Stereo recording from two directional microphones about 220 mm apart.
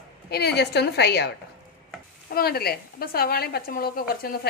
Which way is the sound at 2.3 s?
45° left (ahead or behind).